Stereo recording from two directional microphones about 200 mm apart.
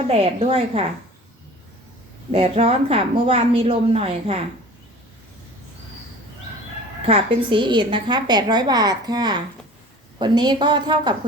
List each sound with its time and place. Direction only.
0.1 s a woman's voice: 30° right (ahead or behind)
2.3 s a woman's voice: 30° right (ahead or behind)
7.0 s a woman's voice: 25° right (ahead or behind)